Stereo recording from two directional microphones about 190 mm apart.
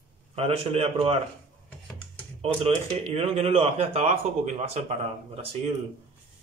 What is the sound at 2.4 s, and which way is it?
Speech, 35° right (ahead or behind).